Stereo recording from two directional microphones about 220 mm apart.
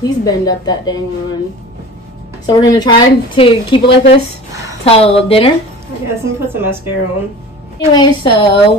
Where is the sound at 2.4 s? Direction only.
15° left (ahead or behind).